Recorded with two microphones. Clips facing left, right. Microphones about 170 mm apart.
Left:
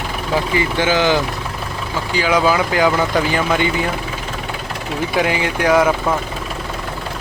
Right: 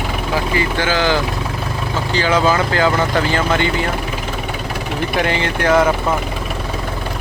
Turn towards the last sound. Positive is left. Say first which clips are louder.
# even
turn(degrees=10)  # may be behind; listen again after turning